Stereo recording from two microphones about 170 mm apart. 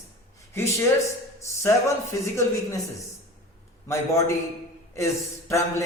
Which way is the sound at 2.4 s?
20° left (ahead or behind).